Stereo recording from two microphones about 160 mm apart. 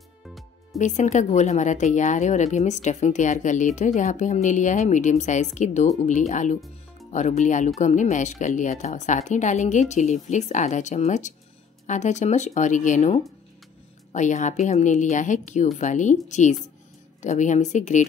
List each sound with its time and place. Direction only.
0.7 s a woman's voice: 50° left (ahead or behind)